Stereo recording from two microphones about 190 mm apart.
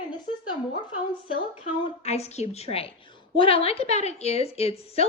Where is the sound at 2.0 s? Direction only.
35° left (ahead or behind).